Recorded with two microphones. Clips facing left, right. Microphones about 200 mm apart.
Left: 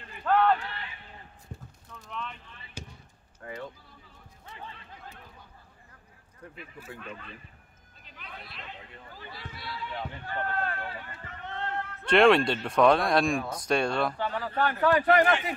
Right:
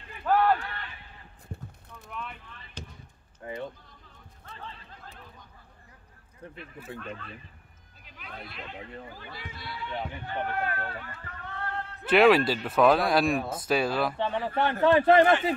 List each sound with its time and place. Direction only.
0.2 s a sound: 5° right (ahead or behind)
2.0 s a sound: 5° right (ahead or behind)
2.8 s basketball bounce: 10° left (ahead or behind)
3.4 s a sound: 20° right (ahead or behind)
6.5 s a man's voice: 5° left (ahead or behind)
8.0 s music: 5° right (ahead or behind)
9.3 s a man's voice: centre (ahead or behind)
9.9 s speech: 15° right (ahead or behind)
11.4 s music: 25° left (ahead or behind)
12.1 s a man's voice: 5° right (ahead or behind)
14.1 s speech: 25° right (ahead or behind)